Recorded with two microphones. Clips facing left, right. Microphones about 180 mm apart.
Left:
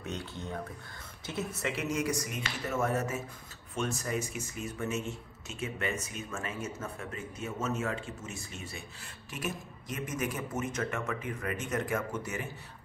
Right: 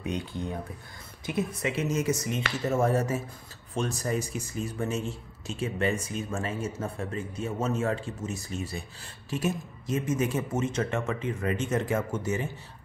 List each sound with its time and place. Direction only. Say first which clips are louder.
0.0 s speech: right 6 dB; 15° right (ahead or behind)